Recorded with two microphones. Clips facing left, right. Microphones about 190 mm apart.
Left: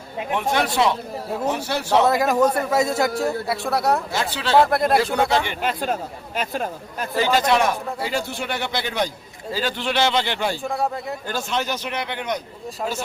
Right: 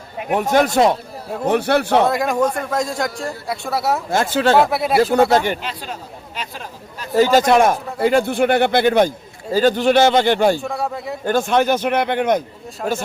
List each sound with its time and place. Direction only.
0.3 s speech: 40° right (ahead or behind)
1.5 s speech: 60° right (ahead or behind)
2.0 s a man's voice: centre (ahead or behind)
4.1 s speech: 50° right (ahead or behind)
4.5 s a man's voice: 5° right (ahead or behind)
5.6 s speech: 50° left (ahead or behind)
7.2 s speech: 45° right (ahead or behind)
10.6 s a man's voice: centre (ahead or behind)
11.3 s speech: 55° right (ahead or behind)